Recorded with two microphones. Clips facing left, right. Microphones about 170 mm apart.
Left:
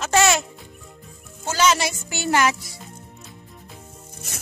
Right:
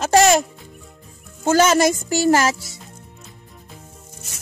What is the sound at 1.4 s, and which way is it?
Speech, 50° right (ahead or behind).